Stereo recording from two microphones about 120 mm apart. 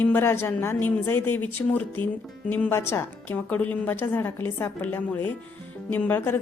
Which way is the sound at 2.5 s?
15° left (ahead or behind).